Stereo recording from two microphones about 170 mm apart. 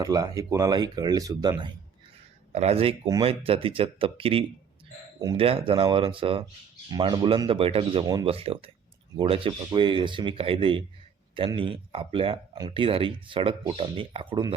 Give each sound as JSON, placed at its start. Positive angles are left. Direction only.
{"t": 0.0, "sound": "speech", "side_deg": -20}
{"t": 2.5, "sound": "speech", "side_deg": -40}